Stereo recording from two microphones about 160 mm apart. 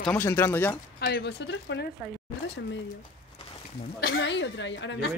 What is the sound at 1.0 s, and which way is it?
Speech, 90° left.